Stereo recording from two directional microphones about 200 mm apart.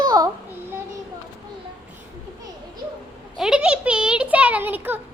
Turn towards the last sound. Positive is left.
turn(degrees=-10)  # may be behind; listen again after turning